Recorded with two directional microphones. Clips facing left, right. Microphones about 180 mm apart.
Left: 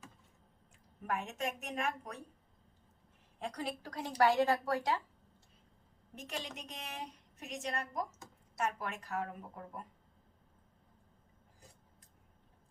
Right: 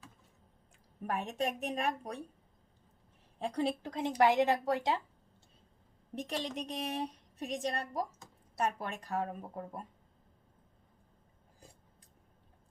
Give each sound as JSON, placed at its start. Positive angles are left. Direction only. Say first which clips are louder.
{"t": 1.0, "sound": "a woman's voice", "louder": "right 3 dB", "side_deg": -35}
{"t": 3.3, "sound": "a woman's voice", "louder": "right 7 dB", "side_deg": -30}
{"t": 6.1, "sound": "a woman's voice", "louder": "right 7 dB", "side_deg": -35}